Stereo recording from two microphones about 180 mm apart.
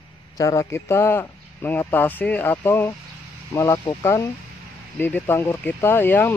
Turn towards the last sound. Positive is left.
turn(degrees=10)  # may be behind; listen again after turning